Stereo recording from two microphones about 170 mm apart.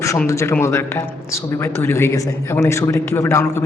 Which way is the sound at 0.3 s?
15° left (ahead or behind).